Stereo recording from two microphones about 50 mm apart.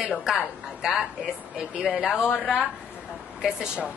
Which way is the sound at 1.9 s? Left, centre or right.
Centre.